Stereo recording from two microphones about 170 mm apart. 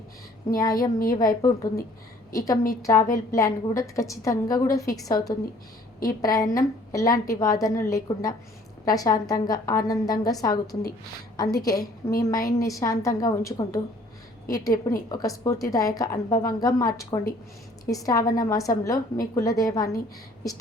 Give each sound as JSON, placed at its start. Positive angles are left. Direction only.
{"t": 0.5, "sound": "a woman's voice", "side_deg": 20}